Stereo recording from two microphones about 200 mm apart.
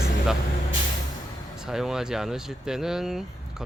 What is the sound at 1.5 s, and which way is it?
Speech, centre (ahead or behind).